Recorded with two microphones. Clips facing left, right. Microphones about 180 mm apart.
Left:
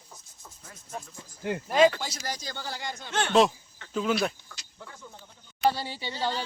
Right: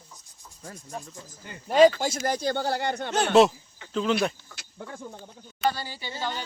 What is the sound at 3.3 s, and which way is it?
Speech, 5° right (ahead or behind).